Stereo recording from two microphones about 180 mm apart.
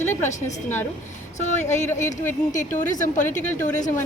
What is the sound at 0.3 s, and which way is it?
A woman's voice, 40° left (ahead or behind).